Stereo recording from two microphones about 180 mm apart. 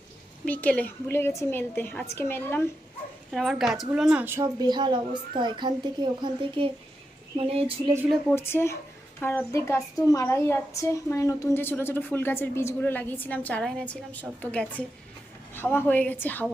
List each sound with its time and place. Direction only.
0.4 s speech: 10° left (ahead or behind)
3.3 s a woman's voice: centre (ahead or behind); by 7.9 s 30° right (ahead or behind)
8.4 s speech: 15° left (ahead or behind)